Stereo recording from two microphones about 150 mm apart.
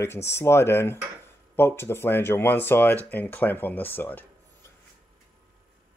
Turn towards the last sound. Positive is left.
turn(degrees=10)  # may be behind; listen again after turning